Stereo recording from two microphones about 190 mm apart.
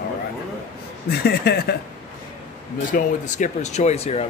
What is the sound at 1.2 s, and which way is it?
Speech, 55° left (ahead or behind).